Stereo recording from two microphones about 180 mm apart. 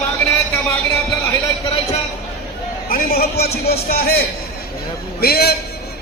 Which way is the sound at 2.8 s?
55° left (ahead or behind).